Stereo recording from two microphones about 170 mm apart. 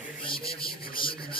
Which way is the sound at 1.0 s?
30° left (ahead or behind).